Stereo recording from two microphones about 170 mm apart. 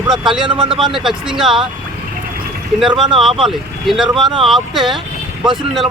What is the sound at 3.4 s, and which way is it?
Speech, centre (ahead or behind).